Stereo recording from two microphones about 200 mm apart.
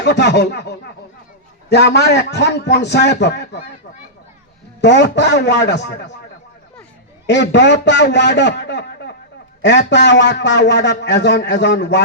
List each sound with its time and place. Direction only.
0.0 s a man's voice: 60° left (ahead or behind)
4.8 s a man's voice: 60° left (ahead or behind)
7.3 s a man's voice: 60° left (ahead or behind)